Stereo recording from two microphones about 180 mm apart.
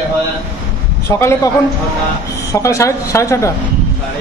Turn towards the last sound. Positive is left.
turn(degrees=15)  # may be behind; listen again after turning